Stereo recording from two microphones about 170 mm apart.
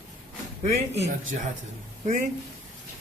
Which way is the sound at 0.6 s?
40° right (ahead or behind).